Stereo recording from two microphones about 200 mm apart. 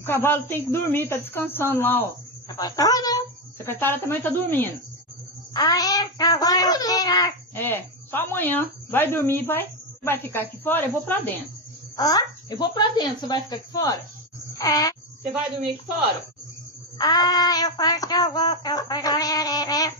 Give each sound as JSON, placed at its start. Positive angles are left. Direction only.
{"t": 0.0, "sound": "a child's voice", "side_deg": 10}
{"t": 12.0, "sound": "synthetic singing", "side_deg": 20}
{"t": 14.6, "sound": "speech", "side_deg": 20}
{"t": 17.0, "sound": "synthetic singing", "side_deg": 20}